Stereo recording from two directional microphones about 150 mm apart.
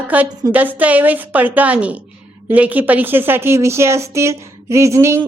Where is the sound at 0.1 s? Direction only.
10° right (ahead or behind).